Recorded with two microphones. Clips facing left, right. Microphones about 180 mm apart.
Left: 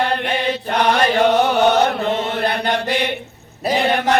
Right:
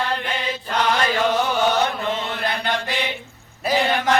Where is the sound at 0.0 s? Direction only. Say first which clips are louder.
Left 6 dB; 65° left (ahead or behind).